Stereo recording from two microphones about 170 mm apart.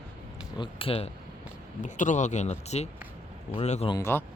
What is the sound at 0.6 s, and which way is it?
Speech, 30° left (ahead or behind).